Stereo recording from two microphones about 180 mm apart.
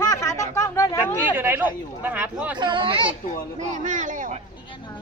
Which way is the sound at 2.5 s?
25° right (ahead or behind).